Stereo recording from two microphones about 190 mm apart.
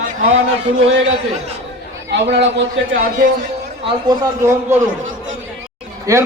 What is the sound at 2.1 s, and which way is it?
A man's voice, 70° right (ahead or behind).